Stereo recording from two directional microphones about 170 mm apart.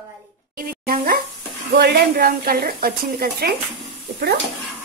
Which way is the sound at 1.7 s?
65° right (ahead or behind).